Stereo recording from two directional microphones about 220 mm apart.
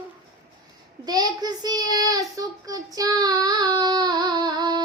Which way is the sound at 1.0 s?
20° right (ahead or behind).